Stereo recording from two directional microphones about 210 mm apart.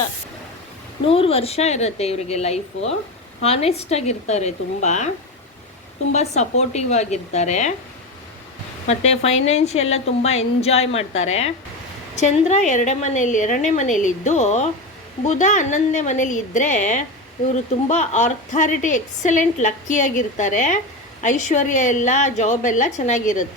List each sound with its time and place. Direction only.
1.0 s a woman's voice: 25° left (ahead or behind)
8.9 s a woman's voice: 30° left (ahead or behind)